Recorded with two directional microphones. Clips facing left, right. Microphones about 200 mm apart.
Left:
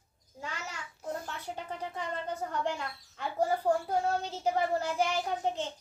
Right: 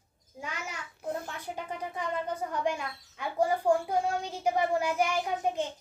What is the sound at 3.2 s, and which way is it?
A child's voice, 15° right (ahead or behind).